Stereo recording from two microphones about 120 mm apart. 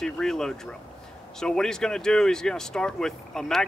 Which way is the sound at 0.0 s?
5° left (ahead or behind).